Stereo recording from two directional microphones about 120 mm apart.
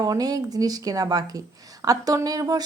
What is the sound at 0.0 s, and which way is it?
Speech, 35° right (ahead or behind).